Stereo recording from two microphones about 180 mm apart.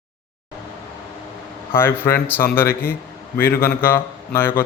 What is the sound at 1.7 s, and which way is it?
Speech, 15° left (ahead or behind).